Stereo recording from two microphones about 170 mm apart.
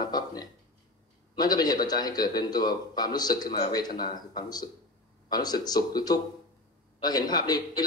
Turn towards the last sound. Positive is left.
turn(degrees=25)  # may be behind; listen again after turning